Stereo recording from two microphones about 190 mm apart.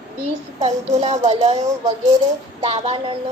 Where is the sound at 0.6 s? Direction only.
35° right (ahead or behind).